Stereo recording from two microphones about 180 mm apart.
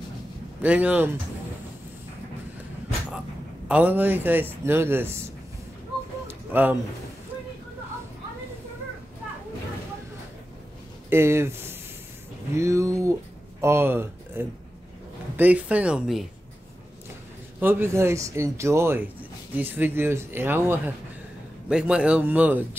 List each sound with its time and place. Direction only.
0.6 s a man's voice: 10° right (ahead or behind)
3.6 s a man's voice: 10° right (ahead or behind)
6.2 s a sound: 10° right (ahead or behind)
11.1 s a man's voice: 15° right (ahead or behind)
17.6 s a man's voice: 10° right (ahead or behind)